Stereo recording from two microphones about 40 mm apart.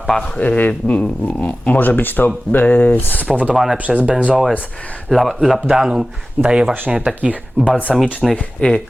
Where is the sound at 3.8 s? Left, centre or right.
Right.